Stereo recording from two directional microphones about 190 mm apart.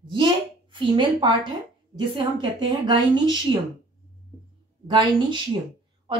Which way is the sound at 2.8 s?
20° right (ahead or behind).